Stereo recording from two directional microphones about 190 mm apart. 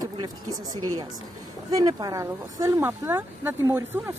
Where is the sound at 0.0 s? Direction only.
20° right (ahead or behind).